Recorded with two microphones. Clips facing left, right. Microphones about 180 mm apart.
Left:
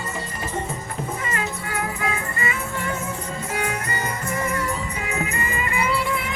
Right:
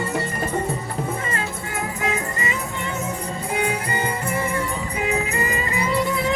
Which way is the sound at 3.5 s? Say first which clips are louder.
Right 4 dB; 30° right (ahead or behind).